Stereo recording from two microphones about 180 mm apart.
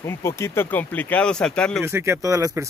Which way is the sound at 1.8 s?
15° right (ahead or behind).